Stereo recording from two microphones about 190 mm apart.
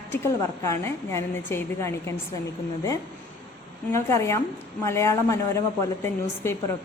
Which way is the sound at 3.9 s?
15° left (ahead or behind).